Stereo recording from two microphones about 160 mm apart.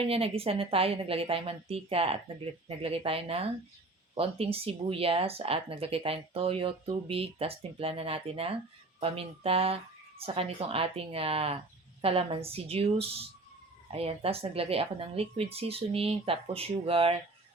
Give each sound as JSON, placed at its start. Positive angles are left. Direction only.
{"t": 0.0, "sound": "speech", "side_deg": -35}